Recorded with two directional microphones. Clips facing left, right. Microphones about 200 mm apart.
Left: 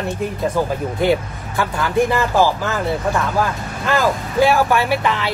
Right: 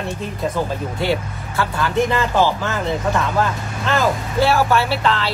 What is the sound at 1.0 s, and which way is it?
Speech, 15° left (ahead or behind).